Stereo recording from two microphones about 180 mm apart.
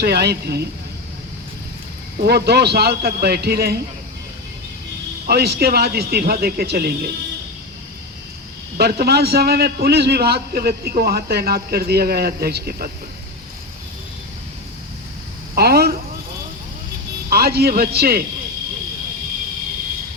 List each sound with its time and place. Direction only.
0.0 s a man's voice: 65° right (ahead or behind)
2.2 s a man's voice: 65° right (ahead or behind)
5.2 s a man's voice: 60° right (ahead or behind)
8.8 s a man's voice: 60° right (ahead or behind)
15.5 s a sound: 60° right (ahead or behind)
17.2 s a man's voice: 60° right (ahead or behind)